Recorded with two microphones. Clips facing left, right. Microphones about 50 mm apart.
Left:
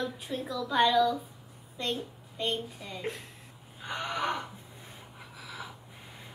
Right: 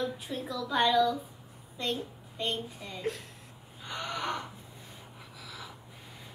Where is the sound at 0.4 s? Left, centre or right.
Centre.